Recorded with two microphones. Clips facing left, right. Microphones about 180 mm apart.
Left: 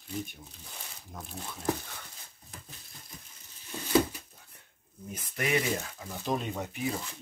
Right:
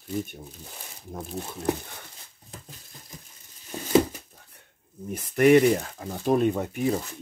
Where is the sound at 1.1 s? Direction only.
25° right (ahead or behind).